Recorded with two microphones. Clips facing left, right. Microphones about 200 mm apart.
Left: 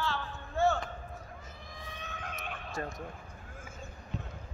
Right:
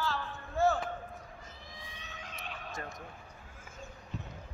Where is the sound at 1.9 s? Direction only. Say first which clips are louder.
Left 9 dB; 55° left (ahead or behind).